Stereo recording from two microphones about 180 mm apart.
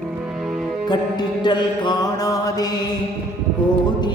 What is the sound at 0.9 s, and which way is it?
Music, 25° left (ahead or behind).